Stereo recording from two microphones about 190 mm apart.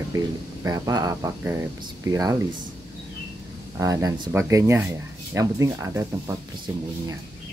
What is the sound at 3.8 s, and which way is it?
Speech, 15° right (ahead or behind).